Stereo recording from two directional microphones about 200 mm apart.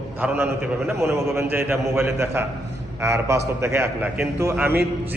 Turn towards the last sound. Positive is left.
turn(degrees=-10)  # may be behind; listen again after turning